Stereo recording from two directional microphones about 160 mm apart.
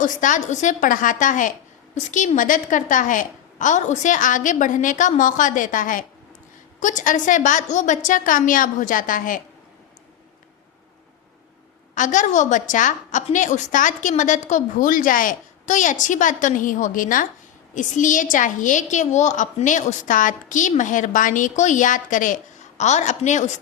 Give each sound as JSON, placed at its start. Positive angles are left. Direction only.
{"t": 0.0, "sound": "a woman's voice", "side_deg": 55}
{"t": 11.9, "sound": "a woman's voice", "side_deg": 55}